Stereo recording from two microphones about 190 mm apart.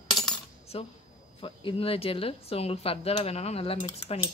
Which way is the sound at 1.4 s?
30° left (ahead or behind).